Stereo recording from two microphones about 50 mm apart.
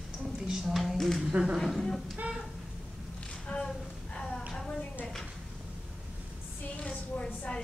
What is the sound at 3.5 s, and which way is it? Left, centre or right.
Speech, left.